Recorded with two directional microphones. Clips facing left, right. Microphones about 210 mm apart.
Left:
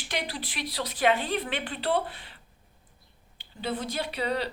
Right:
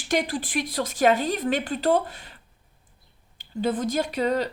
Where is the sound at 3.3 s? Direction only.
45° right (ahead or behind).